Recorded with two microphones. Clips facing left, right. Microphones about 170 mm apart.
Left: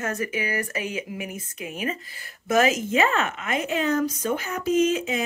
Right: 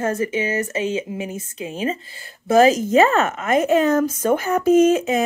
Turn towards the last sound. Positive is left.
turn(degrees=-50)  # may be behind; listen again after turning